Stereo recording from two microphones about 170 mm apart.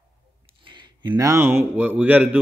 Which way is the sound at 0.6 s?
25° right (ahead or behind).